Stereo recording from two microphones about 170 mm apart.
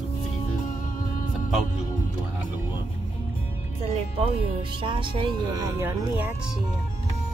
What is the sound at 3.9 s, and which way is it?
Speech, 35° right (ahead or behind).